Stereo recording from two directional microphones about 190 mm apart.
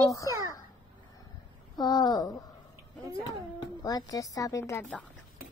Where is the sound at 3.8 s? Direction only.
20° left (ahead or behind).